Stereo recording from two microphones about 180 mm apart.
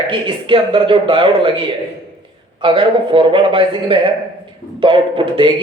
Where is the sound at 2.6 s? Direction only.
30° right (ahead or behind).